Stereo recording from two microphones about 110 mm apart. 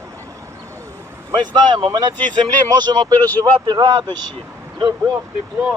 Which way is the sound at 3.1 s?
15° left (ahead or behind).